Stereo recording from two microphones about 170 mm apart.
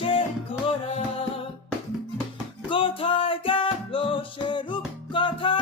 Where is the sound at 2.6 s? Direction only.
30° left (ahead or behind).